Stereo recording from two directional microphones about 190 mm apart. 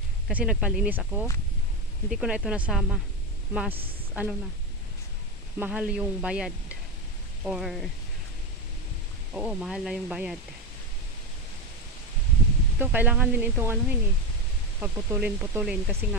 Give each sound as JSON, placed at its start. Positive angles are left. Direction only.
{"t": 0.3, "sound": "speech", "side_deg": -5}
{"t": 4.1, "sound": "a woman's voice", "side_deg": -5}
{"t": 5.6, "sound": "speech", "side_deg": -5}
{"t": 9.3, "sound": "speech", "side_deg": -5}
{"t": 12.7, "sound": "speech", "side_deg": -10}